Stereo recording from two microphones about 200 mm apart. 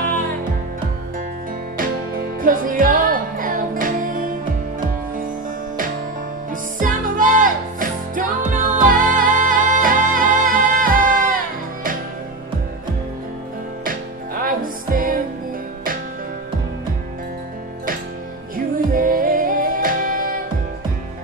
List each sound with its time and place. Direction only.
0.0 s music: 45° right (ahead or behind)
2.4 s music: 45° right (ahead or behind)
6.5 s music: 40° right (ahead or behind)
13.8 s music: 45° right (ahead or behind)
18.9 s music: 45° right (ahead or behind)